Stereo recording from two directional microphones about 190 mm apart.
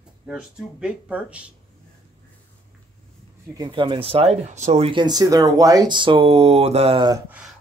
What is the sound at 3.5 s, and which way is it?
Speech, 25° right (ahead or behind).